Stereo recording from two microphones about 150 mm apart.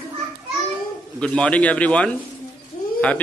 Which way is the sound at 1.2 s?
5° left (ahead or behind).